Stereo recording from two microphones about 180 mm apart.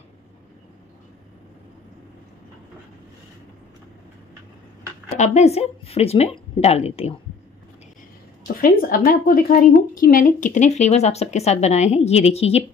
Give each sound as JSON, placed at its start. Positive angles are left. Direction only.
{"t": 5.2, "sound": "a woman's voice", "side_deg": 40}
{"t": 8.5, "sound": "a woman's voice", "side_deg": 50}